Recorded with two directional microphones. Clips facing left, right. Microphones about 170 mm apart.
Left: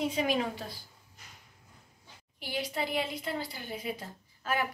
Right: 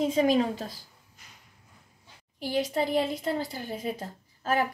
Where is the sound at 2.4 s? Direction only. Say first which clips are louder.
Right 7 dB; 40° right (ahead or behind).